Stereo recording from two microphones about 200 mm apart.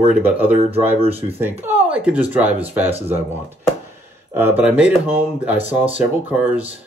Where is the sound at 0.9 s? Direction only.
30° right (ahead or behind).